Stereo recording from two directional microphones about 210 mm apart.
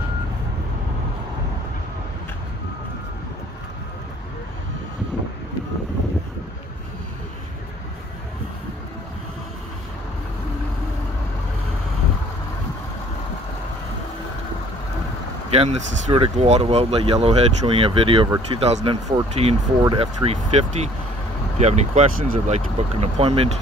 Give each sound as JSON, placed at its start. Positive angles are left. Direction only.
{"t": 15.5, "sound": "speech", "side_deg": -30}